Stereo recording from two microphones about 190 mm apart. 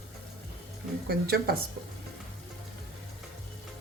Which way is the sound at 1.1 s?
55° right (ahead or behind).